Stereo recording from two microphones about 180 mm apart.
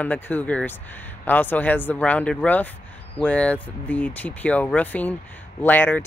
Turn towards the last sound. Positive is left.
turn(degrees=10)  # may be behind; listen again after turning